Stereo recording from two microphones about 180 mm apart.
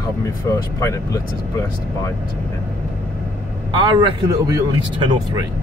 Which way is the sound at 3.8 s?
25° right (ahead or behind).